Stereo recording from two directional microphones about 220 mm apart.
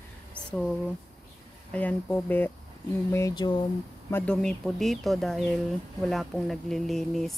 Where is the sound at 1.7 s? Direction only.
5° left (ahead or behind).